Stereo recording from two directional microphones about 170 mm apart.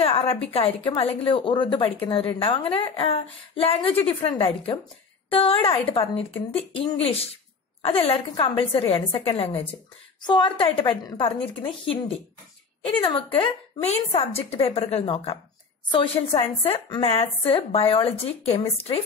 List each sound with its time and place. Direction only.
0.0 s a woman's voice: 35° left (ahead or behind)